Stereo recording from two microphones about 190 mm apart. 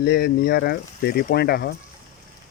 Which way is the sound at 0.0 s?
60° left (ahead or behind).